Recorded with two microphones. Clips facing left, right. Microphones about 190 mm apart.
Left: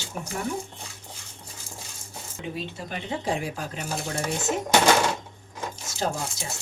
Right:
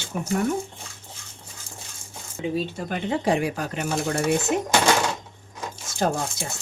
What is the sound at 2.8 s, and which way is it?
Speech, 60° right (ahead or behind).